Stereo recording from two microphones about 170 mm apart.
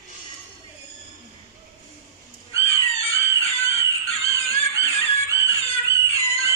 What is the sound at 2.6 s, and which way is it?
Music, 35° left (ahead or behind).